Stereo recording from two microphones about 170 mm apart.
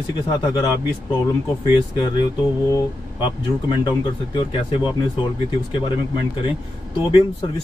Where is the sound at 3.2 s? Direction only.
25° left (ahead or behind).